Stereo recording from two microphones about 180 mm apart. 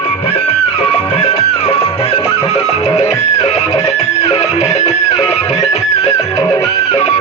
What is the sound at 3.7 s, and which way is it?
Music, 20° left (ahead or behind).